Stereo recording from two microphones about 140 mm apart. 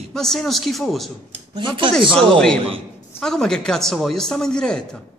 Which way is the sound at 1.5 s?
35° right (ahead or behind).